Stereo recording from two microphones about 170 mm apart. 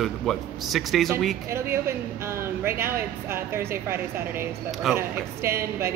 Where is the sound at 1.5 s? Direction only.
15° right (ahead or behind).